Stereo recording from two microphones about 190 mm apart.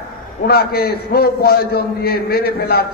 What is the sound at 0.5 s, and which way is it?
A man's voice, 55° left (ahead or behind).